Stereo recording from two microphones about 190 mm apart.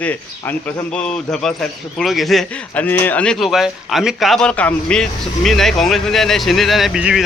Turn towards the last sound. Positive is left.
turn(degrees=-5)  # may be behind; listen again after turning